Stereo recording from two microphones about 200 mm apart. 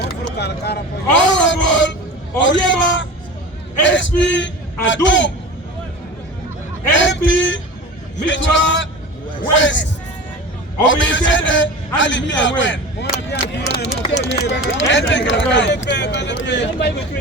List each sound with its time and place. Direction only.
0.3 s a man's voice: 55° left (ahead or behind)
6.9 s a sound: 65° left (ahead or behind)
8.3 s a man's voice: 65° left (ahead or behind)
10.8 s a man's voice: 65° left (ahead or behind)
13.7 s a sound: 65° left (ahead or behind)
14.1 s speech: 65° left (ahead or behind)